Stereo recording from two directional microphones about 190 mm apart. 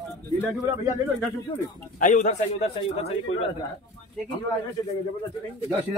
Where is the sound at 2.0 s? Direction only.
40° left (ahead or behind).